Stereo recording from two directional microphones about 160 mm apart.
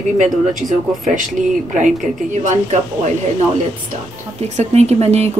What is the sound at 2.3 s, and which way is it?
Speech, 50° right (ahead or behind).